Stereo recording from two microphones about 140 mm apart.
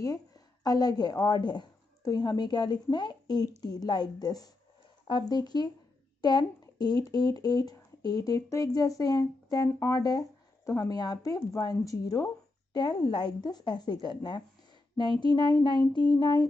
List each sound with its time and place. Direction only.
0.0 s a woman's voice: 25° left (ahead or behind)